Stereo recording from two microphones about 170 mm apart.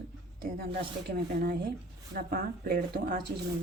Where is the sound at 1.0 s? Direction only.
65° right (ahead or behind).